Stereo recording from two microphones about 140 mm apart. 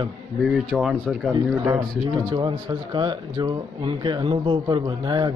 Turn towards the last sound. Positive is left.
turn(degrees=-30)  # may be behind; listen again after turning